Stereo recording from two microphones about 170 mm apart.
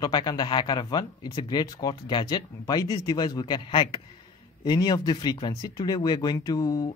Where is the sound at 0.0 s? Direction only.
25° left (ahead or behind).